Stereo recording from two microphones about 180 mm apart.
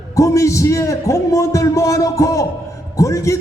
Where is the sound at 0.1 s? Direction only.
15° left (ahead or behind).